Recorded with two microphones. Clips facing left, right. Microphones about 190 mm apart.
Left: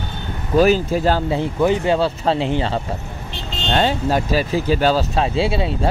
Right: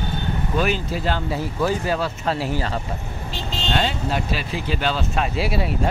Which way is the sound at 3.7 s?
40° left (ahead or behind).